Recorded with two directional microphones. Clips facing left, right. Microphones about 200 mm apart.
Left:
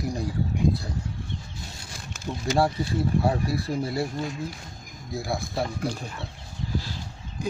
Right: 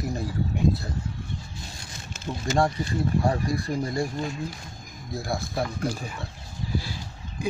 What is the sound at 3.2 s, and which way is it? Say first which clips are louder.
Speech: right 1 dB; 5° left (ahead or behind).